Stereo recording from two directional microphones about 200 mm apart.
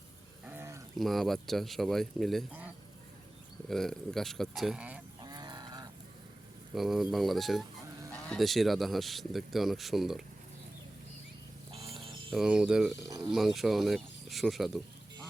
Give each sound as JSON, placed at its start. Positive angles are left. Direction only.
{"t": 0.4, "sound": "a sound", "side_deg": -10}
{"t": 0.9, "sound": "speech", "side_deg": 0}
{"t": 3.7, "sound": "speech", "side_deg": 0}
{"t": 5.2, "sound": "a sound", "side_deg": -20}
{"t": 6.7, "sound": "speech", "side_deg": 0}
{"t": 11.7, "sound": "a sound", "side_deg": -30}
{"t": 12.3, "sound": "speech", "side_deg": -5}
{"t": 13.1, "sound": "speech", "side_deg": -15}
{"t": 13.3, "sound": "speech", "side_deg": 0}